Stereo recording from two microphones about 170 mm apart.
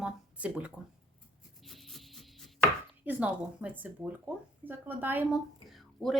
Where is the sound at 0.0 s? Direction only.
5° right (ahead or behind).